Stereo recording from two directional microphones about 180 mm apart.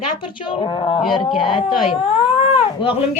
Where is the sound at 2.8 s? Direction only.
30° left (ahead or behind).